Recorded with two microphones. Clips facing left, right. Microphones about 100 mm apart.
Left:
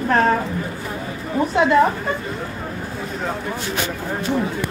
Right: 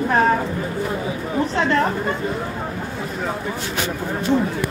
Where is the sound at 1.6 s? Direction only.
10° left (ahead or behind).